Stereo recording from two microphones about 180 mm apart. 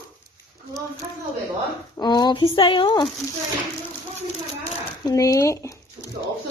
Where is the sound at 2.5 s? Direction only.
30° left (ahead or behind).